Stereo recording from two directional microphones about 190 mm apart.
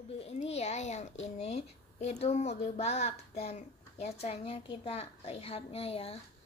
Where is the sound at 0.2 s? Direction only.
35° left (ahead or behind).